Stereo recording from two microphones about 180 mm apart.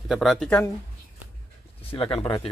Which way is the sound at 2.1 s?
30° left (ahead or behind).